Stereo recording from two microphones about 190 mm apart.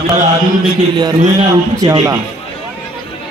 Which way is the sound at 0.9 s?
20° right (ahead or behind).